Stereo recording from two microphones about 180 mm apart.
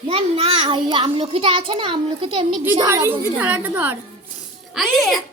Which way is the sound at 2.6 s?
15° right (ahead or behind).